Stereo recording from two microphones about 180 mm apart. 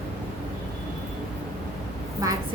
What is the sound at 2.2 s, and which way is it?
Speech, 20° right (ahead or behind).